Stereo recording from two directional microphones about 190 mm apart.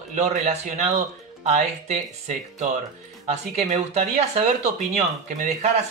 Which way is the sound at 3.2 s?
35° right (ahead or behind).